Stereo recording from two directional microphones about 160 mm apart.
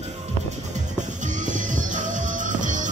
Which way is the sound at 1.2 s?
50° right (ahead or behind).